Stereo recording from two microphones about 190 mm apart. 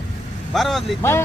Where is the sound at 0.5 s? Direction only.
Centre (ahead or behind).